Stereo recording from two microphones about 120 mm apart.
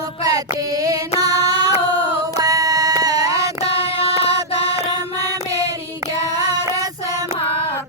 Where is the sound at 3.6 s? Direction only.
55° left (ahead or behind).